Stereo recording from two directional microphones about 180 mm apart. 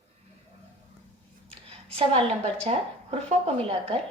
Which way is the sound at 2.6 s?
35° right (ahead or behind).